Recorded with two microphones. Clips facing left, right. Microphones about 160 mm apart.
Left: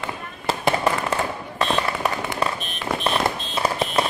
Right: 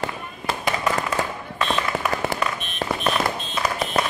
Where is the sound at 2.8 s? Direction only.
40° right (ahead or behind).